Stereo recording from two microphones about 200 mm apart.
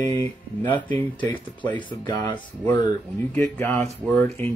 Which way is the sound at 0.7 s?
10° left (ahead or behind).